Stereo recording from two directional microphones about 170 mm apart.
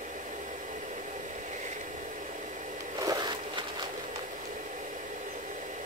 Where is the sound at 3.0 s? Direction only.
25° right (ahead or behind).